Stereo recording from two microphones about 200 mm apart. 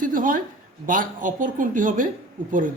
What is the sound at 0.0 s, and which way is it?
Speech, 40° right (ahead or behind).